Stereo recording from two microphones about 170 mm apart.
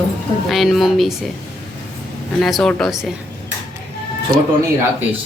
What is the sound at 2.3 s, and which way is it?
Speech, centre (ahead or behind).